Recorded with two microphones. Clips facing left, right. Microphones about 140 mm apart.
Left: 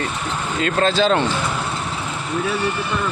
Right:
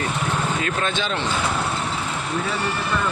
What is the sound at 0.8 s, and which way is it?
Speech, 40° left (ahead or behind).